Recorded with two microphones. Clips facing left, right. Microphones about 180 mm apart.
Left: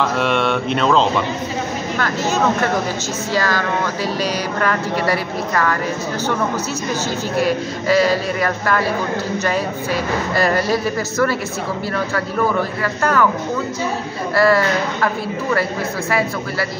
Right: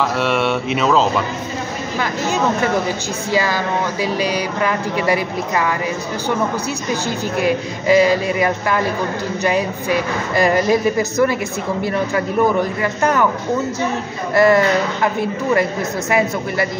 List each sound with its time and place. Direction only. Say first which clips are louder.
0.0 s speech: even; 5° right (ahead or behind)
3.3 s a woman's voice: right 1 dB; 15° right (ahead or behind)
7.4 s a woman's voice: right 5 dB; 15° right (ahead or behind)
12.8 s speech: left 1 dB; 20° right (ahead or behind)
14.3 s speech: right 2 dB; 20° right (ahead or behind)
16.1 s speech: right 4 dB; 20° right (ahead or behind)